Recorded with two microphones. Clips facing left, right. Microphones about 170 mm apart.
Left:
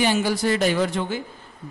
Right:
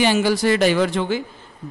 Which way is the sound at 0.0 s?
90° right.